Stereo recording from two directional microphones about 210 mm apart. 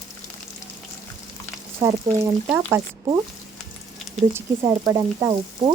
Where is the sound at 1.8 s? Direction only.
15° right (ahead or behind).